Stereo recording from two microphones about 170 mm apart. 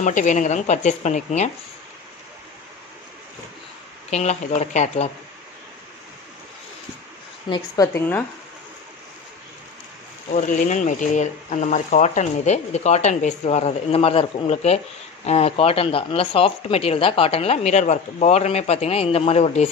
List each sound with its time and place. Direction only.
0.0 s speech: 45° left (ahead or behind)
4.1 s speech: 40° left (ahead or behind)
7.4 s speech: 25° left (ahead or behind)
10.3 s speech: 50° left (ahead or behind)